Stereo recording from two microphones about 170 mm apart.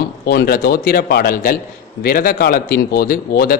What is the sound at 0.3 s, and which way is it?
Speech, 65° left (ahead or behind).